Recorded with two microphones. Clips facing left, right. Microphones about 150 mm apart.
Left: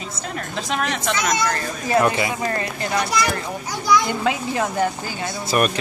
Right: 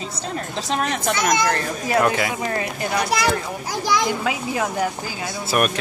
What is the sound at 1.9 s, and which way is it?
Speech, centre (ahead or behind).